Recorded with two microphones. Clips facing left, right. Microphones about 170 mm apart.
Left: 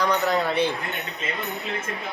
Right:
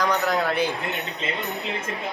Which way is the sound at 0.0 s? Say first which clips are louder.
Even; centre (ahead or behind).